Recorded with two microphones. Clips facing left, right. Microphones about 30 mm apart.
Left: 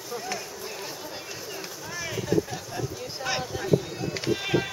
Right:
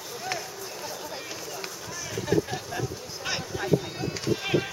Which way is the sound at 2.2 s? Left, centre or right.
Centre.